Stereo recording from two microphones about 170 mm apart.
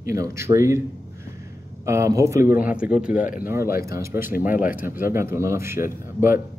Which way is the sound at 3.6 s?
60° left (ahead or behind).